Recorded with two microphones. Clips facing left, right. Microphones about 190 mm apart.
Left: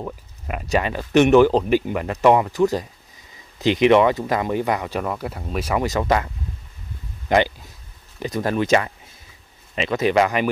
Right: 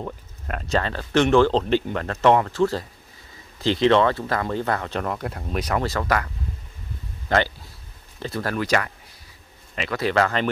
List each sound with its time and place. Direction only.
0.0 s speech: 10° left (ahead or behind)
5.9 s speech: 20° left (ahead or behind)
7.2 s a sound: 15° left (ahead or behind)
8.2 s speech: 15° left (ahead or behind)